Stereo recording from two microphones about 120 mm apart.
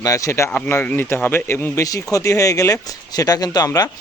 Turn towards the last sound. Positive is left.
turn(degrees=30)  # may be behind; listen again after turning